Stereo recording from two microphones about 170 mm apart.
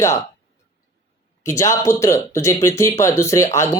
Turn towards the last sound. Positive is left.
turn(degrees=15)  # may be behind; listen again after turning